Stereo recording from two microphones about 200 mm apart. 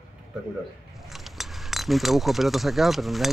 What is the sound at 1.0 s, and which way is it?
Speech, centre (ahead or behind).